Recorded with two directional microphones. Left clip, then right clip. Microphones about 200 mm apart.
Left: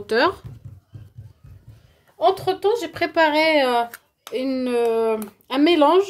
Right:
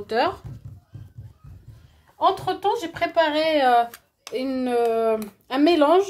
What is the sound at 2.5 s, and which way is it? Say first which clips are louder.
Speech: left 2 dB; 55° left (ahead or behind).